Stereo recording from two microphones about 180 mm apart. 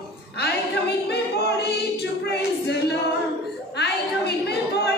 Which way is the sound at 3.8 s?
65° left (ahead or behind).